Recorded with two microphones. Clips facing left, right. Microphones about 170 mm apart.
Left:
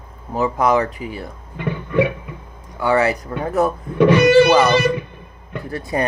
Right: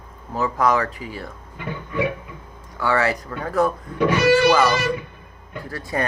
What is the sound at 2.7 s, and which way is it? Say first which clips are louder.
Speech: left 4 dB; 20° left (ahead or behind).